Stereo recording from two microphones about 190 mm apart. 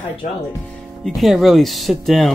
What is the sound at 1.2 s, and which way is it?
Speech, centre (ahead or behind).